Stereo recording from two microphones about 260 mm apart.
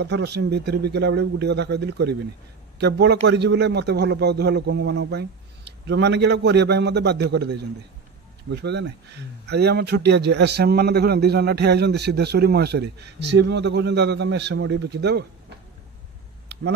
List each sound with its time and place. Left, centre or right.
0.0 s a man's voice: right